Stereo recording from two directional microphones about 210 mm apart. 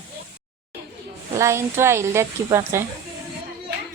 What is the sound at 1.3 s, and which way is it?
Speech, 15° right (ahead or behind).